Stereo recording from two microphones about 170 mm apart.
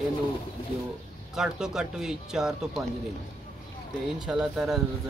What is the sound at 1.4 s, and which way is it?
Speech, 5° right (ahead or behind).